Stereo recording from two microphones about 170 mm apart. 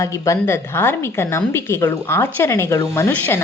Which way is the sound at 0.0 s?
20° left (ahead or behind).